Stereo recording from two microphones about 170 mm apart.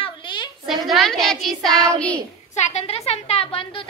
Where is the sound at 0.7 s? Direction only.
Centre (ahead or behind).